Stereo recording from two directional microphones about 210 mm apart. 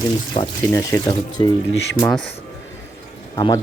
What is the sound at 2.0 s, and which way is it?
Speech, 5° left (ahead or behind).